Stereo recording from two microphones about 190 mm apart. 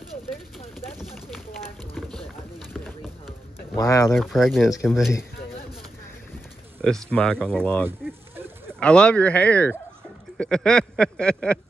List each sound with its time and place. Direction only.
0.9 s a sound: centre (ahead or behind)
2.0 s rowboat: 5° left (ahead or behind)
3.7 s speech: 15° left (ahead or behind)
4.1 s speech: centre (ahead or behind)
6.8 s speech: 5° left (ahead or behind)